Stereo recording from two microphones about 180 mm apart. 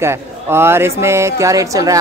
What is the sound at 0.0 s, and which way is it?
Speech, 15° right (ahead or behind).